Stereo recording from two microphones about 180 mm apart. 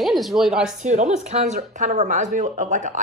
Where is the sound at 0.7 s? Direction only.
40° right (ahead or behind).